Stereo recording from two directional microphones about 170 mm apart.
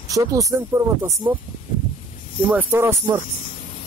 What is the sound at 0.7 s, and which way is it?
Speech, 15° right (ahead or behind).